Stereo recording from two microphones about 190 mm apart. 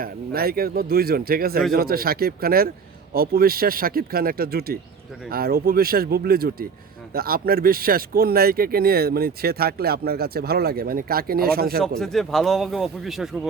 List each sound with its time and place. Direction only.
0.0 s speech: 55° right (ahead or behind)
11.8 s speech: centre (ahead or behind)